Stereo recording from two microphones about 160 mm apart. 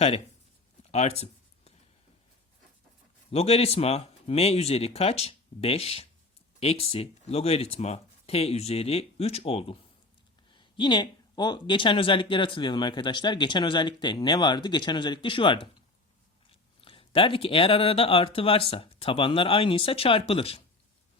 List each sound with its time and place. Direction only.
0.8 s writing: 40° left (ahead or behind)
3.3 s speech: 40° left (ahead or behind)